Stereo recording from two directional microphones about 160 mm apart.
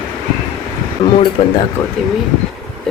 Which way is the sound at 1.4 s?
35° left (ahead or behind).